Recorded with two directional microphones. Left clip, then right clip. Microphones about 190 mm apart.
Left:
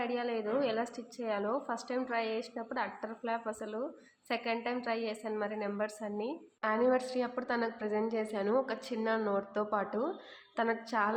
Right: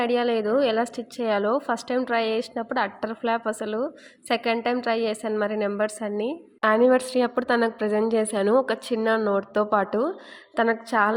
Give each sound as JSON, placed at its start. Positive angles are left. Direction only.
{"t": 0.0, "sound": "a woman's voice", "side_deg": -45}